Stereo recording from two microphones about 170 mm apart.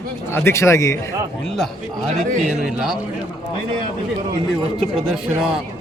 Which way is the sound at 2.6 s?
Centre (ahead or behind).